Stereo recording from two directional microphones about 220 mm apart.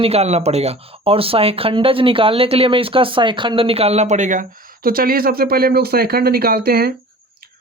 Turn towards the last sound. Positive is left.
turn(degrees=-45)  # may be behind; listen again after turning